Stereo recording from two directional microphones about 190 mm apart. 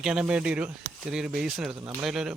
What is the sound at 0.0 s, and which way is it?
Speech, 5° right (ahead or behind).